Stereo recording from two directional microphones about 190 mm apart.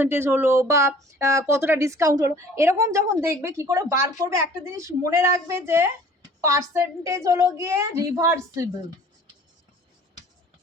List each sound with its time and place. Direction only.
0.0 s speech: 10° right (ahead or behind)